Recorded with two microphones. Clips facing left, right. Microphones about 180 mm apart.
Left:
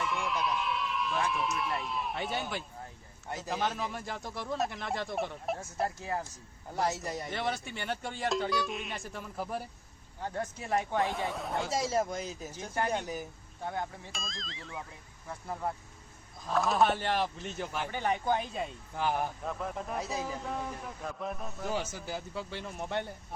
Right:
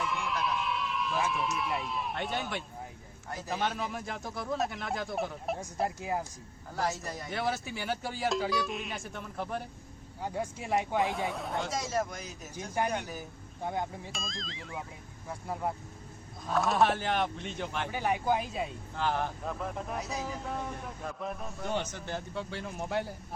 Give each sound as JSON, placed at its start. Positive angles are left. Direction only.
{"t": 0.0, "sound": "a man's voice", "side_deg": 0}
{"t": 6.0, "sound": "speech", "side_deg": -15}
{"t": 6.9, "sound": "speech", "side_deg": 20}
{"t": 7.3, "sound": "a man's voice", "side_deg": 0}
{"t": 10.2, "sound": "a man's voice", "side_deg": -10}
{"t": 11.7, "sound": "speech", "side_deg": 25}
{"t": 13.7, "sound": "speech", "side_deg": -15}
{"t": 14.1, "sound": "a man's voice", "side_deg": 0}
{"t": 16.5, "sound": "a man's voice", "side_deg": 0}
{"t": 17.9, "sound": "a man's voice", "side_deg": -10}
{"t": 18.9, "sound": "a man's voice", "side_deg": 10}